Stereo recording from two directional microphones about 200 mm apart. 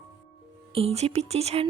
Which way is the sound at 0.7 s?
30° right (ahead or behind).